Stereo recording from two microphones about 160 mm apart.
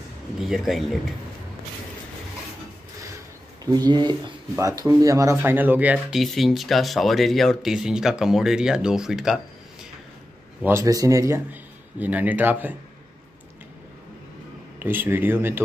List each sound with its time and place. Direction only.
0.4 s speech: centre (ahead or behind)
3.7 s speech: 25° right (ahead or behind); by 9.4 s 5° right (ahead or behind)
10.6 s a man's voice: 20° right (ahead or behind)
14.8 s speech: 15° right (ahead or behind)